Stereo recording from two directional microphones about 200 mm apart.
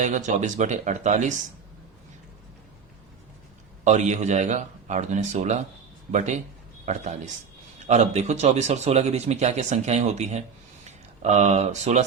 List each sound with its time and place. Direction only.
0.0 s speech: 40° right (ahead or behind)
3.8 s speech: 35° right (ahead or behind)